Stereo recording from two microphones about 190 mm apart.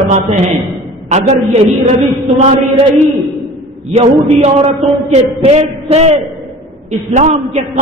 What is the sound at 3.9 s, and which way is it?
A man's voice, 30° right (ahead or behind).